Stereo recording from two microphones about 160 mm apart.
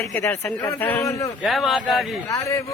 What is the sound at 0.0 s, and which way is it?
A man's voice, 15° left (ahead or behind).